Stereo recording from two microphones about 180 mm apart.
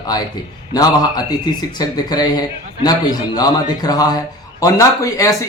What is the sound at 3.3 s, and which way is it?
Speech, 20° left (ahead or behind).